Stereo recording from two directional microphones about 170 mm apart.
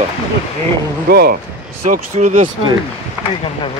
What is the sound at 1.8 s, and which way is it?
Speech, 50° right (ahead or behind).